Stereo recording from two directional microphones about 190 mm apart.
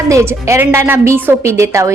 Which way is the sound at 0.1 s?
15° right (ahead or behind).